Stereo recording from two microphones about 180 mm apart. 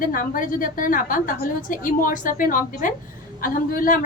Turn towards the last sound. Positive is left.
turn(degrees=50)  # may be behind; listen again after turning